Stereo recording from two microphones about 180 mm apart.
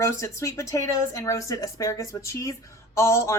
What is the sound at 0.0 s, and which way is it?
Speech, 15° left (ahead or behind).